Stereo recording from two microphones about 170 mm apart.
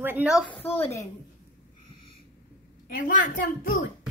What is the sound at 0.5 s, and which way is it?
Speech, 35° left (ahead or behind).